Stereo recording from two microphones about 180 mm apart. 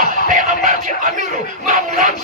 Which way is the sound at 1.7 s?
45° right (ahead or behind).